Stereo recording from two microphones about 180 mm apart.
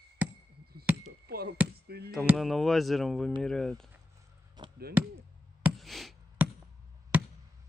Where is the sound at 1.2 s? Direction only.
60° right (ahead or behind).